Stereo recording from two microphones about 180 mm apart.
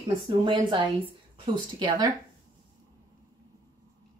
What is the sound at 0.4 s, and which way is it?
Speech, 25° right (ahead or behind).